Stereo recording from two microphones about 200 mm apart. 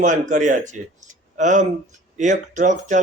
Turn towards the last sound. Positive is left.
turn(degrees=-40)  # may be behind; listen again after turning